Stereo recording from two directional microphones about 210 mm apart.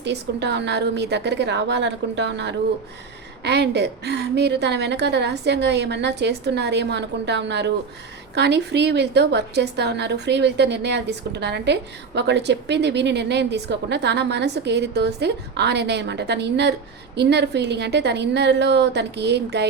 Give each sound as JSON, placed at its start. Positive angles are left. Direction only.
{"t": 0.0, "sound": "a woman's voice", "side_deg": -55}